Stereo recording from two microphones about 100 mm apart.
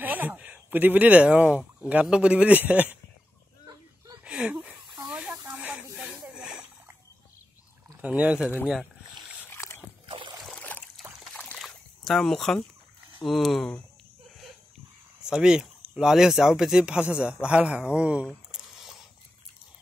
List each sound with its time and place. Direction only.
0.0 s a man's voice: 15° right (ahead or behind)
4.2 s a sound: 10° right (ahead or behind)
5.0 s snake: 10° right (ahead or behind)
5.3 s snake: 25° right (ahead or behind)
5.6 s snake: 15° right (ahead or behind)
6.3 s a sound: 10° right (ahead or behind)
8.0 s a man's voice: 15° right (ahead or behind)
9.4 s boat: 25° left (ahead or behind)
10.0 s a sound: 50° right (ahead or behind)
10.7 s trickle: 15° left (ahead or behind)
11.3 s a sound: 5° left (ahead or behind)
13.2 s speech: centre (ahead or behind)
15.2 s a man's voice: 5° right (ahead or behind)